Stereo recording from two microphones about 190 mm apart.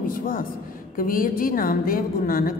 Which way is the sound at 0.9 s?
45° left (ahead or behind).